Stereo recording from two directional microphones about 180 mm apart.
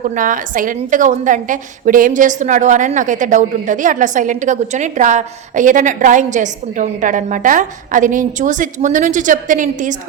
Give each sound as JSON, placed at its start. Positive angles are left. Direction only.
{"t": 0.0, "sound": "a woman's voice", "side_deg": -45}